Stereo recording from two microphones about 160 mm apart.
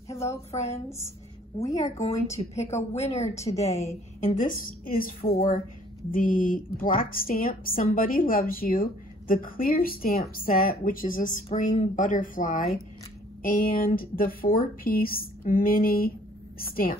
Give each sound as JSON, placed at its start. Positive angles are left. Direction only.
{"t": 0.2, "sound": "speech", "side_deg": 15}
{"t": 1.9, "sound": "a woman's voice", "side_deg": 45}